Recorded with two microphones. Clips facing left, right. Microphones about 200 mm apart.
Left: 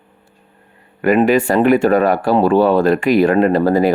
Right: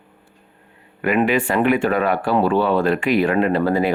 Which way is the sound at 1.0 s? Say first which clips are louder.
Left 5 dB; 40° left (ahead or behind).